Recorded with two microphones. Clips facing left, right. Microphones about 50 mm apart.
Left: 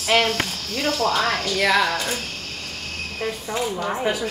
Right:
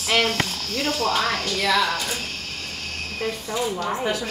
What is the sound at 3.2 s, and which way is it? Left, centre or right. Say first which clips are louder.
Speech: even; centre.